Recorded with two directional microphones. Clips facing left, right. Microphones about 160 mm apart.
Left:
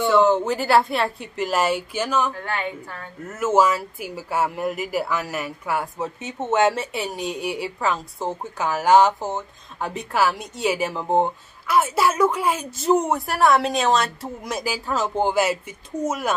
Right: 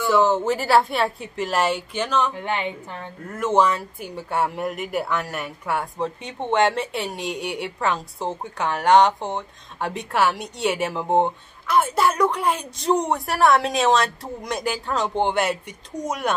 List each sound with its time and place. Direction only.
0.1 s speech: centre (ahead or behind)
2.3 s a woman's voice: 20° right (ahead or behind)
3.3 s speech: 5° left (ahead or behind)